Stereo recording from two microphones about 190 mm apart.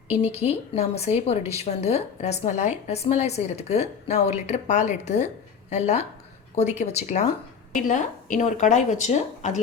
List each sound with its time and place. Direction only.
0.1 s a woman's voice: 35° left (ahead or behind)